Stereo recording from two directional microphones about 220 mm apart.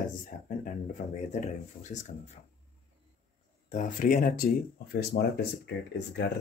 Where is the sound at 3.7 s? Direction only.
35° left (ahead or behind); by 6.2 s 50° left (ahead or behind).